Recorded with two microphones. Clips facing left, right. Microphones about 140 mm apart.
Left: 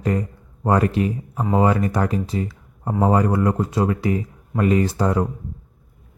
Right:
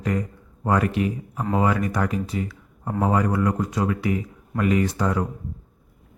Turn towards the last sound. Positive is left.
turn(degrees=30)  # may be behind; listen again after turning